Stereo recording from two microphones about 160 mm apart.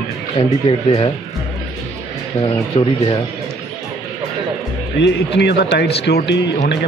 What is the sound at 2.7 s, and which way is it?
Speech, 35° left (ahead or behind).